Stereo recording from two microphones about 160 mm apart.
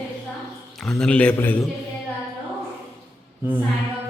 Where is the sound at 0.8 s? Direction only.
5° left (ahead or behind).